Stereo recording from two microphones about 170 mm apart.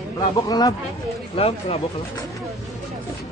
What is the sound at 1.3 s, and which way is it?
Speech, 35° left (ahead or behind).